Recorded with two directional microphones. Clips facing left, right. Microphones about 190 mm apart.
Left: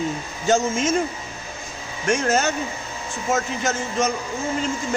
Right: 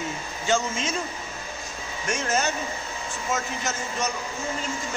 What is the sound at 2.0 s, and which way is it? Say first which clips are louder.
Speech: left 6 dB; 50° left (ahead or behind).